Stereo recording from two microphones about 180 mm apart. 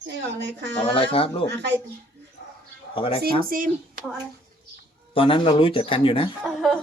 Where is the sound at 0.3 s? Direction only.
75° right (ahead or behind).